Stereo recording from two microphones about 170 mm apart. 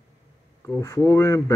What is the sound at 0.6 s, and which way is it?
Speech, 15° left (ahead or behind).